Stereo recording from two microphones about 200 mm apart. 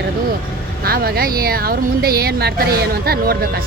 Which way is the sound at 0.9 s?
50° right (ahead or behind).